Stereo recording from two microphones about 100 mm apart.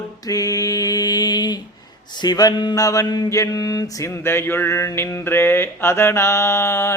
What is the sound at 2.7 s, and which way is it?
Mantra, 35° left (ahead or behind).